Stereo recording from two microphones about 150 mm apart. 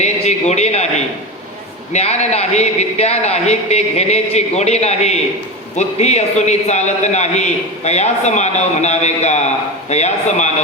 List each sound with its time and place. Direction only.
0.0 s a man's voice: 50° left (ahead or behind)